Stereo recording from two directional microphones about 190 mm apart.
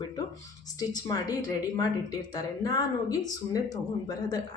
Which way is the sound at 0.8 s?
20° left (ahead or behind).